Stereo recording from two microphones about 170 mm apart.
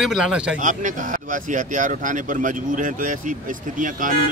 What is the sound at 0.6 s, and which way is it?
Speech, 50° right (ahead or behind).